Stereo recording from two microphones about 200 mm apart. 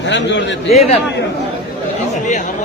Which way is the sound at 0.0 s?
65° left (ahead or behind).